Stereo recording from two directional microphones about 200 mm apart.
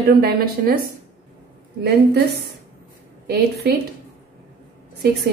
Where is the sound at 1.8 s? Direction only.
55° right (ahead or behind).